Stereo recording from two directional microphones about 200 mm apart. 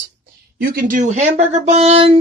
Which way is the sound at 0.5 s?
45° right (ahead or behind).